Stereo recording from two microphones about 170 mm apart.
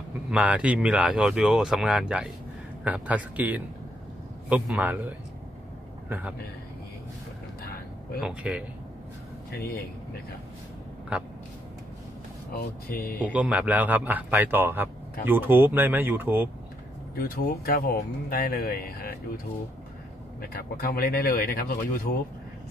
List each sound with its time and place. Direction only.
0.3 s a man's voice: 5° right (ahead or behind)
7.6 s a sound: 65° left (ahead or behind)
8.2 s speech: 5° right (ahead or behind)
9.5 s speech: 65° left (ahead or behind)
11.1 s speech: 5° right (ahead or behind)
12.5 s speech: 60° left (ahead or behind)
13.3 s speech: 10° right (ahead or behind)
17.1 s speech: 60° left (ahead or behind)
20.4 s speech: 60° left (ahead or behind)